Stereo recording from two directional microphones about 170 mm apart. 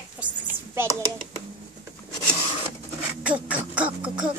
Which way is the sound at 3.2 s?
10° right (ahead or behind).